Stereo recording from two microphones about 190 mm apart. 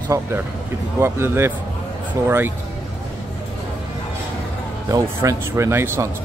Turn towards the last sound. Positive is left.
turn(degrees=-10)  # may be behind; listen again after turning